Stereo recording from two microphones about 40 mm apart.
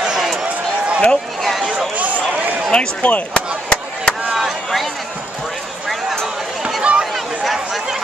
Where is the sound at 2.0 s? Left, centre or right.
Right.